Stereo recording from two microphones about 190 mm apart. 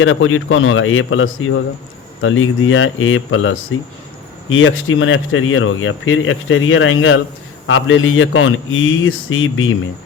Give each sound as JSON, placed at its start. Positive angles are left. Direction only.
{"t": 0.0, "sound": "speech", "side_deg": 90}